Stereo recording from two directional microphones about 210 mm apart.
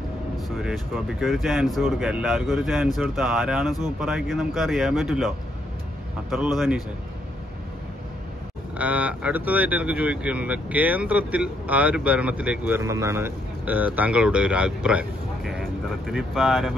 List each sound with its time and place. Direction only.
0.4 s speech: centre (ahead or behind)
6.3 s speech: centre (ahead or behind)
8.7 s speech: 5° right (ahead or behind)